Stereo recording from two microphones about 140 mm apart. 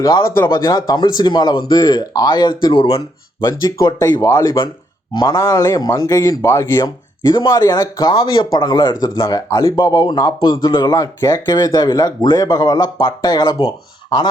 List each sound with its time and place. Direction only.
0.3 s speech: 20° left (ahead or behind)